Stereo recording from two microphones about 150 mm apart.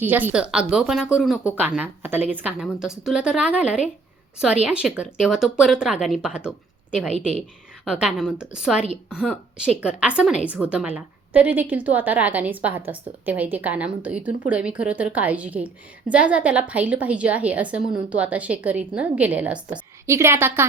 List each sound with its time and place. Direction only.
0.0 s a woman's voice: 10° right (ahead or behind)